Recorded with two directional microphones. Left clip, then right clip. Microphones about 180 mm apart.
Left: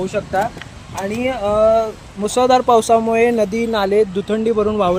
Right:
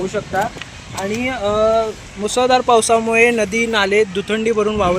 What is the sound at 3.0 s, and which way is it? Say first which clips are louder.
Speech: right 1 dB; 45° left (ahead or behind).